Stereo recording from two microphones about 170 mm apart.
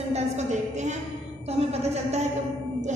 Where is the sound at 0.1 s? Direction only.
45° right (ahead or behind).